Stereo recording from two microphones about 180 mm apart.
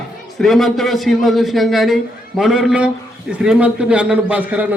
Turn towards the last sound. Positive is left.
turn(degrees=-10)  # may be behind; listen again after turning